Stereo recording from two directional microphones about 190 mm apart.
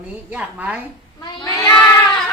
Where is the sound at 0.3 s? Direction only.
10° right (ahead or behind).